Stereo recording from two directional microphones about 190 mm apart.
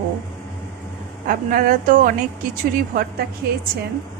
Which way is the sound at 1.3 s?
50° right (ahead or behind).